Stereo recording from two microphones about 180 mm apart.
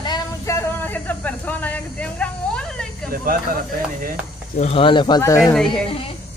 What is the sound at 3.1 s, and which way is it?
Speech, 55° right (ahead or behind).